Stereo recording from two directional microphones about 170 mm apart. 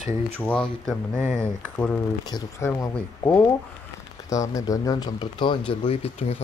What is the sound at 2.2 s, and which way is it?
Speech, 20° left (ahead or behind).